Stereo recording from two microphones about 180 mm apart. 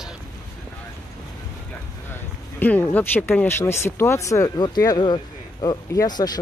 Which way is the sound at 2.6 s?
10° left (ahead or behind).